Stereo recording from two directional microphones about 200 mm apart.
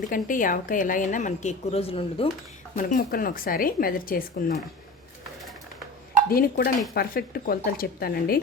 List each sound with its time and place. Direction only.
0.0 s a woman's voice: 40° left (ahead or behind)
2.7 s speech: 45° left (ahead or behind)
6.3 s speech: 45° left (ahead or behind)